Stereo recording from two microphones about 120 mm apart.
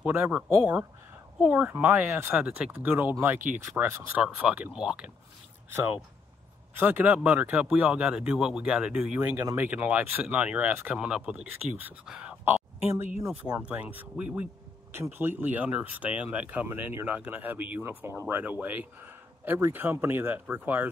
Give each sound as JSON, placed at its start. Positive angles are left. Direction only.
{"t": 0.0, "sound": "speech", "side_deg": -15}
{"t": 6.7, "sound": "speech", "side_deg": -15}